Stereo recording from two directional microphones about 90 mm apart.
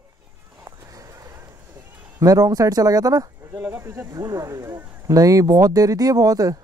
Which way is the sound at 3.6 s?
25° right (ahead or behind).